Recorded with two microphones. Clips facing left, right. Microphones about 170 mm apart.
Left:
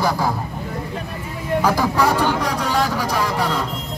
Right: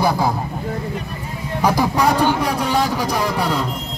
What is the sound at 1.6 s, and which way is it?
A man's voice, 15° right (ahead or behind).